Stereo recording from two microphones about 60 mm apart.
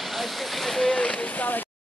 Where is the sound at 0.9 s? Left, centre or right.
Centre.